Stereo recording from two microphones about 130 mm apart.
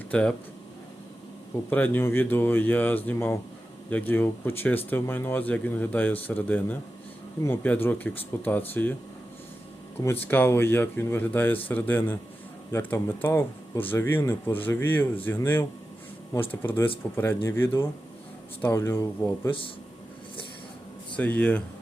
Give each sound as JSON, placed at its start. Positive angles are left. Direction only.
{"t": 0.1, "sound": "speech", "side_deg": 10}
{"t": 1.7, "sound": "speech", "side_deg": 15}
{"t": 10.0, "sound": "speech", "side_deg": 20}
{"t": 19.5, "sound": "a man's voice", "side_deg": 45}
{"t": 21.2, "sound": "speech", "side_deg": 10}